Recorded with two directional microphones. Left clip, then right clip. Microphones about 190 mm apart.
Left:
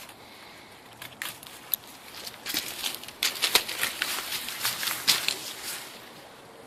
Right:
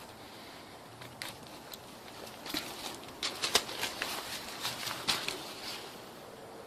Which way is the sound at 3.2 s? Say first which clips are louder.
Left 6 dB; 10° right (ahead or behind).